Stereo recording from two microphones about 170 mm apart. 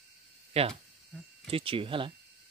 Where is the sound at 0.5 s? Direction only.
35° right (ahead or behind).